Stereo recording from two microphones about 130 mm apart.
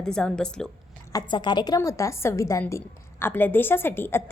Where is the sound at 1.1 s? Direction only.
35° left (ahead or behind).